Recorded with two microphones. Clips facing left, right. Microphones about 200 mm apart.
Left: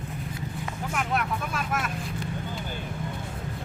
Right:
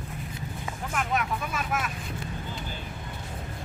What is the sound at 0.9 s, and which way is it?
Speech, centre (ahead or behind).